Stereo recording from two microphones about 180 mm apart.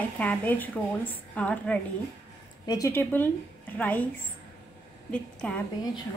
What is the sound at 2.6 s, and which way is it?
Speech, 20° left (ahead or behind).